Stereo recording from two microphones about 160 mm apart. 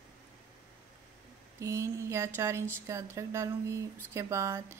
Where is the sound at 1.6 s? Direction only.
20° right (ahead or behind).